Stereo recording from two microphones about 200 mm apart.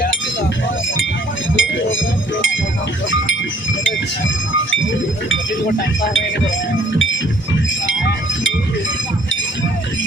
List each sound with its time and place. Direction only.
1.5 s chink: 75° left (ahead or behind)